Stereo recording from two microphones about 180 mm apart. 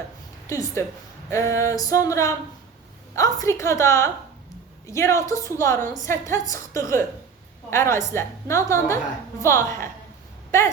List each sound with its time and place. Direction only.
0.4 s a woman's voice: 15° left (ahead or behind)